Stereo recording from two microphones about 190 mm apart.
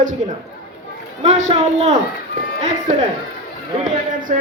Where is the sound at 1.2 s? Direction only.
35° right (ahead or behind).